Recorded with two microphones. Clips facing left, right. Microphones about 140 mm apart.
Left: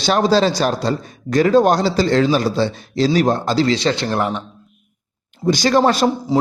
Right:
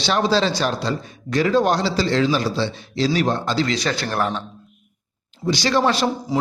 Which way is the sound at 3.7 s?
25° left (ahead or behind).